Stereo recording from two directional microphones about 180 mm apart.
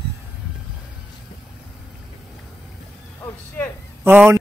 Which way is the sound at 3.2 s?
10° left (ahead or behind).